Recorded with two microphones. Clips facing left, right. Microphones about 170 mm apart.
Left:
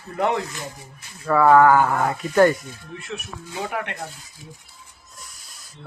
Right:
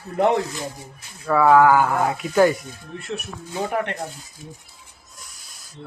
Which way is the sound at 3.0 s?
55° right (ahead or behind).